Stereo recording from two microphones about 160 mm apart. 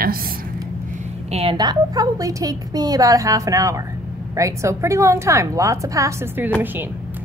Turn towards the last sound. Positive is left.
turn(degrees=-20)  # may be behind; listen again after turning